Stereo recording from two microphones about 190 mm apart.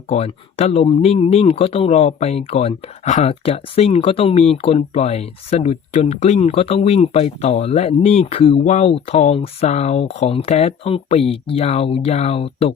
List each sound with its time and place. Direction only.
0.1 s speech: 35° left (ahead or behind)